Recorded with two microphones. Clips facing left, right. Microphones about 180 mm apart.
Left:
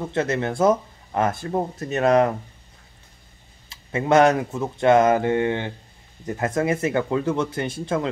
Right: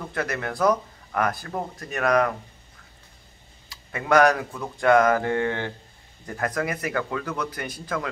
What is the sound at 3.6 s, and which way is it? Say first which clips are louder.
Speech: left 4 dB; 25° left (ahead or behind).